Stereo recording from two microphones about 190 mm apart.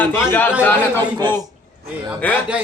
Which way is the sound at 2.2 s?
10° left (ahead or behind).